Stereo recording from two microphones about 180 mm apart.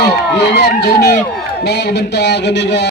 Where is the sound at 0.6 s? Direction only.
65° left (ahead or behind).